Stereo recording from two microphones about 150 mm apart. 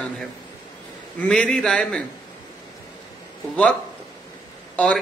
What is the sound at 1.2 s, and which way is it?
Speech, 5° left (ahead or behind).